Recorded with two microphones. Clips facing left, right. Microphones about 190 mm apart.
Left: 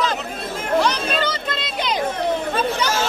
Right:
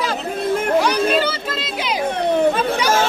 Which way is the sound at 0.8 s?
10° right (ahead or behind).